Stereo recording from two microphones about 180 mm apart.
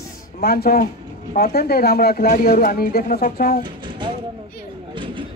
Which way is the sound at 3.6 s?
25° right (ahead or behind).